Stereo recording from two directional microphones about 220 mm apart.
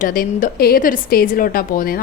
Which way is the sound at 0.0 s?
40° left (ahead or behind).